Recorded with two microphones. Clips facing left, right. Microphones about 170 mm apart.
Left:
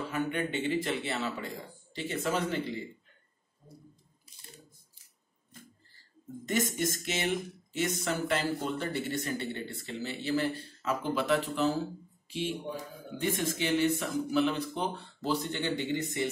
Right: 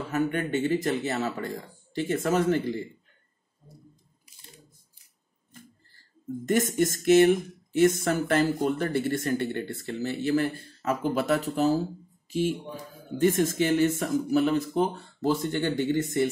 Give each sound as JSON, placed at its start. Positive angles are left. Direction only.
{"t": 0.1, "sound": "speech", "side_deg": -45}
{"t": 6.4, "sound": "speech", "side_deg": -50}